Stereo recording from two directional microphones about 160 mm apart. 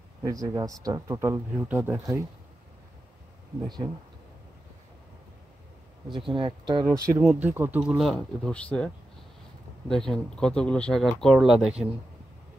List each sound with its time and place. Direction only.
0.2 s speech: 20° right (ahead or behind)
3.6 s speech: 25° right (ahead or behind)
6.1 s speech: 30° right (ahead or behind)
7.2 s speech: 10° right (ahead or behind)